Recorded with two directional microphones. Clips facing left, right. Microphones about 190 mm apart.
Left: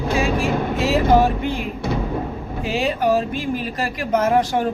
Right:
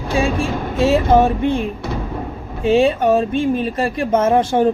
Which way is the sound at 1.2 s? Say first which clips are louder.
Right 4 dB; 25° right (ahead or behind).